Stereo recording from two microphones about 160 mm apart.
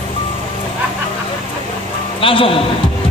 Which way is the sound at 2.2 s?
35° left (ahead or behind).